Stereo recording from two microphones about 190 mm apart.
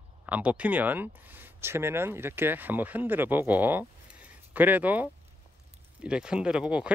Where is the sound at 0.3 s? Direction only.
5° right (ahead or behind).